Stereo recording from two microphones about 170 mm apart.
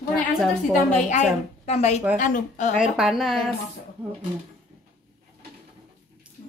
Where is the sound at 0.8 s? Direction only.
45° left (ahead or behind).